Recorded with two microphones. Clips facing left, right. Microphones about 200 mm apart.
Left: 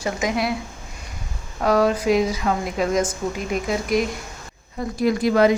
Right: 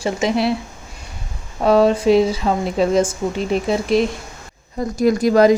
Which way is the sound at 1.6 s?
25° right (ahead or behind).